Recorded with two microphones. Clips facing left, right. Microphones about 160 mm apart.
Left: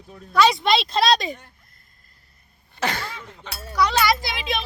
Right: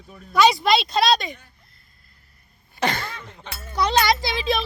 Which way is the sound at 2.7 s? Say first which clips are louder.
Right 2 dB; 5° left (ahead or behind).